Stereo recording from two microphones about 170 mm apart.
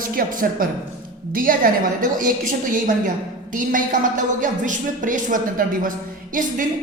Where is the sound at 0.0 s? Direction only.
55° right (ahead or behind).